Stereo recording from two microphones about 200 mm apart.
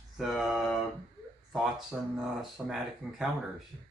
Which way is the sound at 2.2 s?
Centre (ahead or behind).